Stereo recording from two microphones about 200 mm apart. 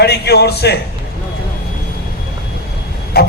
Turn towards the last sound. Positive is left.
turn(degrees=50)  # may be behind; listen again after turning